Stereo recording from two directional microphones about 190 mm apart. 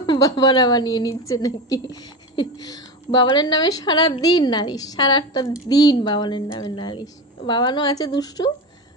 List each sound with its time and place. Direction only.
0.0 s a woman's voice: 20° left (ahead or behind)